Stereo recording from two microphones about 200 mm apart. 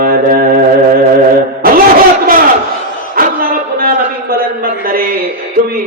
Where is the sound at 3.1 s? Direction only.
45° right (ahead or behind).